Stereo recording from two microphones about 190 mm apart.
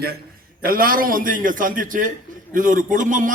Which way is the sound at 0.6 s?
50° right (ahead or behind).